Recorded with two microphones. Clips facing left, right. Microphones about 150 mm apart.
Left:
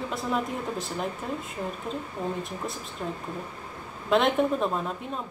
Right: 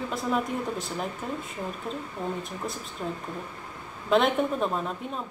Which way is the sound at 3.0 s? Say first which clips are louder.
Even; 5° right (ahead or behind).